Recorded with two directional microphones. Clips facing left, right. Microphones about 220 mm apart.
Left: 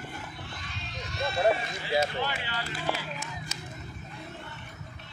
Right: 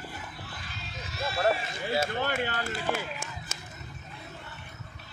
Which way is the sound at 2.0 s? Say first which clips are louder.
Right 2 dB; 50° right (ahead or behind).